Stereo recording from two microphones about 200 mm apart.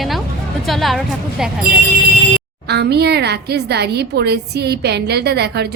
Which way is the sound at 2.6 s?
55° right (ahead or behind).